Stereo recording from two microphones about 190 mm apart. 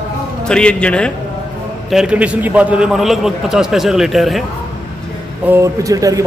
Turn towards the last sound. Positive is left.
turn(degrees=-15)  # may be behind; listen again after turning